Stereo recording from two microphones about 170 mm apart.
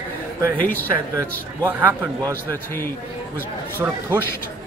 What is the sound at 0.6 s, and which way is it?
Speech, 10° left (ahead or behind).